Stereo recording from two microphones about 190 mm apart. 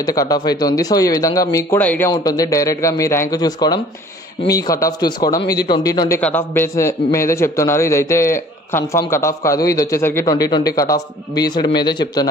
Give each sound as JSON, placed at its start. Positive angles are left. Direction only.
{"t": 0.0, "sound": "a man's voice", "side_deg": 20}